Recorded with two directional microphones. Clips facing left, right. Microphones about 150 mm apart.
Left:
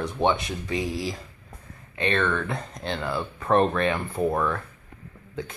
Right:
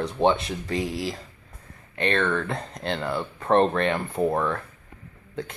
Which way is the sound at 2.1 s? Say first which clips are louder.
Right 1 dB; 35° right (ahead or behind).